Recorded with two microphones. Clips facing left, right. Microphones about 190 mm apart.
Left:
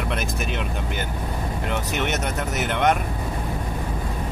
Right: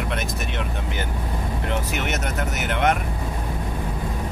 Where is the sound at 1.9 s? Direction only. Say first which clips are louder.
Left 1 dB; centre (ahead or behind).